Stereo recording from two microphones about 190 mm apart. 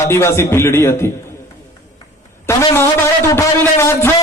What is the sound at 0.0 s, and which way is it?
Music, 15° left (ahead or behind).